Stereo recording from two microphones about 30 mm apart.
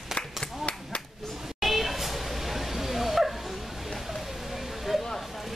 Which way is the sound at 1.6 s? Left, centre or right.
Centre.